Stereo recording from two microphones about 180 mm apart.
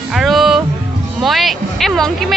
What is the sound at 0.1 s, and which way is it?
Music, centre (ahead or behind).